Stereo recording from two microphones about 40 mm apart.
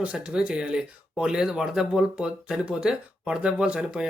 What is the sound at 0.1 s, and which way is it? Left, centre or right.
Speech, right.